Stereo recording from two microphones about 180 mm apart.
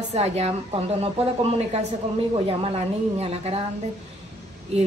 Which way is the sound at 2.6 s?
35° right (ahead or behind).